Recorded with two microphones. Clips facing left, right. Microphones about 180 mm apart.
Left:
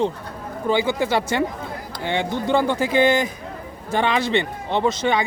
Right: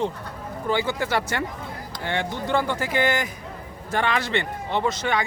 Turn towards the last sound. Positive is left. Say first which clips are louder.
# left 4 dB
turn(degrees=20)  # may be behind; listen again after turning